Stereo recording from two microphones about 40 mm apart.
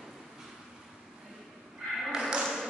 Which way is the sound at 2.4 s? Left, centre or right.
Centre.